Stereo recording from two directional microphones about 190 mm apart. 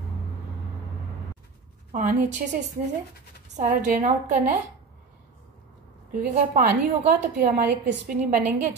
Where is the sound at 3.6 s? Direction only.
45° right (ahead or behind).